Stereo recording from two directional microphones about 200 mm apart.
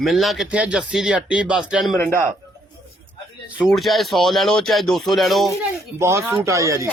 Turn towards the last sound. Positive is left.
turn(degrees=-15)  # may be behind; listen again after turning